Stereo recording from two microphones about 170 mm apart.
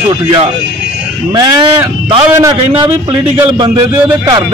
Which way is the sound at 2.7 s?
30° right (ahead or behind).